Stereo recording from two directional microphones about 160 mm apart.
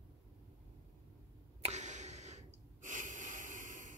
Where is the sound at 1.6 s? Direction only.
45° right (ahead or behind).